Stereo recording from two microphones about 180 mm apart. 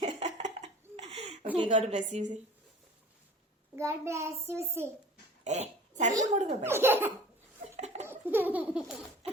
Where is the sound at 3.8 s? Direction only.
15° right (ahead or behind).